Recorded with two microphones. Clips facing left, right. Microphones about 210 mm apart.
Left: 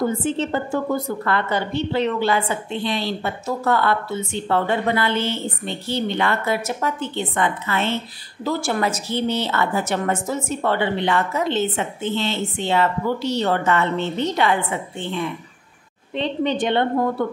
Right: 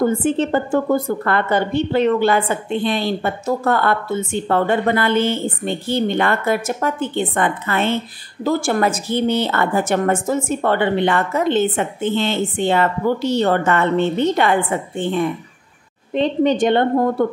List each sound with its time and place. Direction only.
0.0 s a woman's voice: 55° right (ahead or behind)